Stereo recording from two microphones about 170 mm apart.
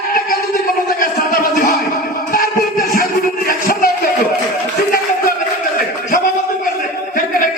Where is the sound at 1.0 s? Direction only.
55° left (ahead or behind).